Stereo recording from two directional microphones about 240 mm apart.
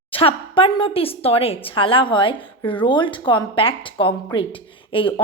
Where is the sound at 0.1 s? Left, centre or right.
Left.